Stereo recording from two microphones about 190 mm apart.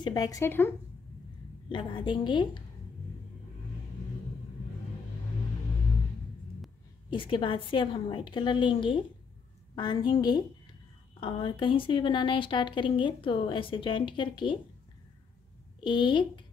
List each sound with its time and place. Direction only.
0.0 s speech: 20° left (ahead or behind)
1.7 s a woman's voice: 25° left (ahead or behind)
7.1 s a woman's voice: 25° left (ahead or behind)
15.8 s a woman's voice: 25° left (ahead or behind)